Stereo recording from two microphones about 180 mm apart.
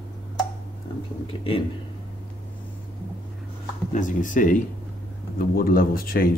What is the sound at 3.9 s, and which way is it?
Speech, 45° left (ahead or behind).